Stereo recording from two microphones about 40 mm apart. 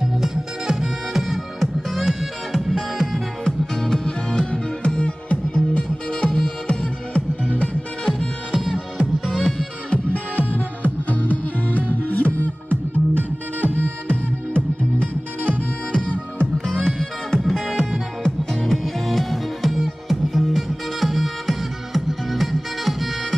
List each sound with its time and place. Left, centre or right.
0.2 s music: centre
3.4 s music: centre
9.4 s music: centre
10.5 s music: left
13.6 s music: right
14.0 s music: left
16.6 s music: centre
17.4 s music: centre